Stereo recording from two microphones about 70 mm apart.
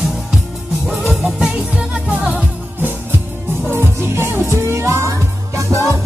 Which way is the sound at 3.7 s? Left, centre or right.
Right.